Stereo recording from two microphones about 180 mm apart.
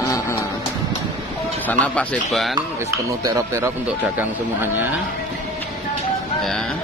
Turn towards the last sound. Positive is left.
turn(degrees=-10)  # may be behind; listen again after turning